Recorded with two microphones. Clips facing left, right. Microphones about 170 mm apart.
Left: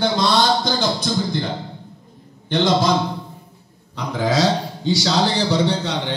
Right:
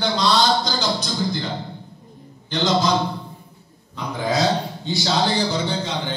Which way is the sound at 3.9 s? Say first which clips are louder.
Left 3 dB; 90° left.